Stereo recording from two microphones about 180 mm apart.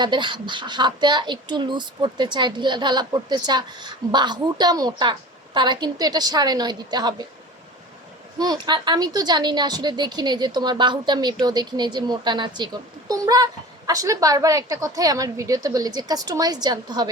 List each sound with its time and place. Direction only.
0.0 s speech: 25° right (ahead or behind)
8.4 s speech: 20° right (ahead or behind)